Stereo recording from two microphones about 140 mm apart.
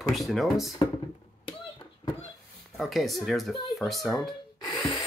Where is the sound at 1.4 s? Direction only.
35° left (ahead or behind).